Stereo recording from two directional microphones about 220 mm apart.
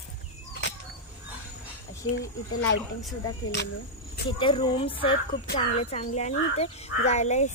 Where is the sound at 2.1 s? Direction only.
55° left (ahead or behind).